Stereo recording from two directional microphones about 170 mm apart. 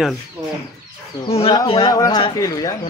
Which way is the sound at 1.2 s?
35° left (ahead or behind).